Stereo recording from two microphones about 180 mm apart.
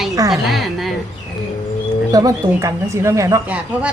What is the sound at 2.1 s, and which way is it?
Speech, 20° right (ahead or behind).